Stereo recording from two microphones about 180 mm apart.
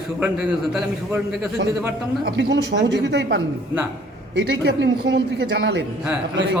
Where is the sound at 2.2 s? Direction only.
75° right (ahead or behind).